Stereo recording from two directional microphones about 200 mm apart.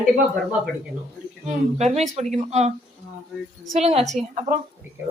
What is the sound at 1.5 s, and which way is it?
Speech, 35° right (ahead or behind).